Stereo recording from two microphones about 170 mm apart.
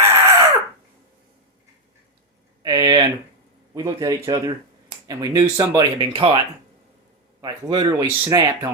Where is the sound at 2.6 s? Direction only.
20° right (ahead or behind).